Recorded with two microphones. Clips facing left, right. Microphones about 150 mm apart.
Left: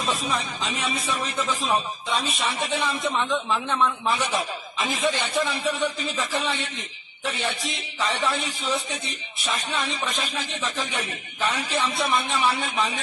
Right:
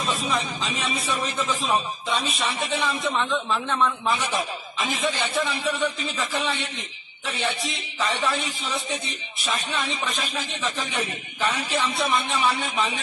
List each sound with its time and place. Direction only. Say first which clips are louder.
0.0 s a man's voice: right 1 dB; centre (ahead or behind)
3.4 s a man's voice: even; 15° left (ahead or behind)
3.7 s a man's voice: even; centre (ahead or behind)
8.0 s a man's voice: even; centre (ahead or behind)